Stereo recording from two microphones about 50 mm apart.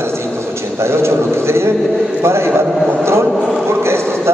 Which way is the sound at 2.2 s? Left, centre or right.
Right.